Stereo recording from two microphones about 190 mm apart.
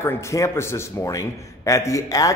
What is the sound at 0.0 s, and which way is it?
A man's voice, 15° left (ahead or behind).